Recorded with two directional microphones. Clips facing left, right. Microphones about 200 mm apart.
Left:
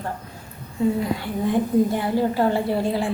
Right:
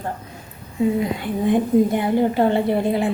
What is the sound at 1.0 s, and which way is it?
A woman's voice, 20° right (ahead or behind).